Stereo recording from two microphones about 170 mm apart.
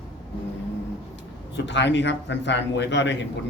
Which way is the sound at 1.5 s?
90° left.